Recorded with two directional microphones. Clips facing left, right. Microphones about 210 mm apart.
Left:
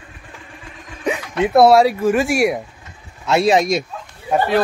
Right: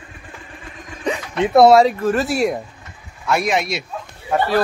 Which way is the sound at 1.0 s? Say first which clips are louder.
Left 1 dB; 5° left (ahead or behind).